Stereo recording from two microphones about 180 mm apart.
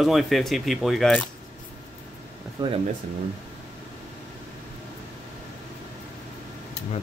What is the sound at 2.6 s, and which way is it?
Speech, 25° right (ahead or behind).